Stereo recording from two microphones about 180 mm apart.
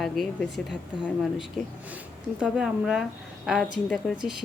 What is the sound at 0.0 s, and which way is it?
Speech, centre (ahead or behind).